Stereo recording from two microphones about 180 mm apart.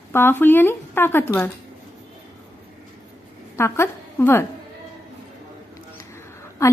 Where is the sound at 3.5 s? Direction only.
15° left (ahead or behind).